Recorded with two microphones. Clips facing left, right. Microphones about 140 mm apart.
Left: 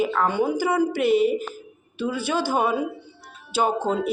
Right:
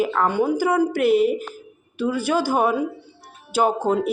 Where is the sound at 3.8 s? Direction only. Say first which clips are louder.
Right 3 dB; 55° right (ahead or behind).